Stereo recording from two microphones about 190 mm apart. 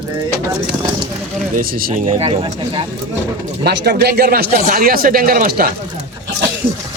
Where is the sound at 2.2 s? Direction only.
30° right (ahead or behind).